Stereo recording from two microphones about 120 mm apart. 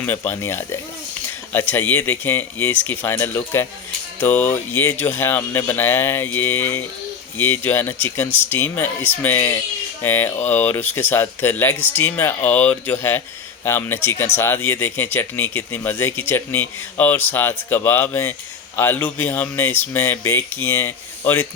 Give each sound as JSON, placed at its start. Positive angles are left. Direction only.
{"t": 0.0, "sound": "speech", "side_deg": 15}